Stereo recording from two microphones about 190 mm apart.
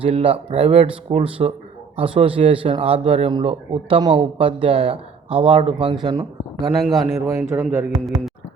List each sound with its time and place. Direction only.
0.0 s speech: 30° right (ahead or behind)
6.8 s speech: centre (ahead or behind)
7.5 s speech: 10° right (ahead or behind)